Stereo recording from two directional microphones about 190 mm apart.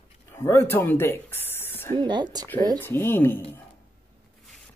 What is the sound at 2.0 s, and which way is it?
Speech, 25° right (ahead or behind).